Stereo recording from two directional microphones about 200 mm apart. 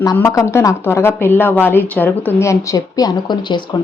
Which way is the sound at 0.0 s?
15° left (ahead or behind).